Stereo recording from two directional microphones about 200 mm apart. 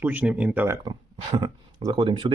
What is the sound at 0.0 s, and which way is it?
Speech, 5° right (ahead or behind).